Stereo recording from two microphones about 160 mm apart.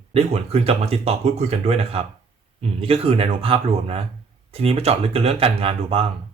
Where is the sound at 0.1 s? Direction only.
40° right (ahead or behind).